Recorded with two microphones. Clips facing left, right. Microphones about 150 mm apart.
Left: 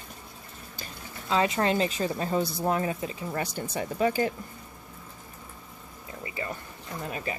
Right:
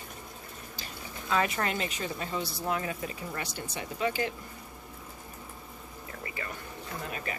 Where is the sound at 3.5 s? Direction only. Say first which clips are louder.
Left 7 dB; 45° left (ahead or behind).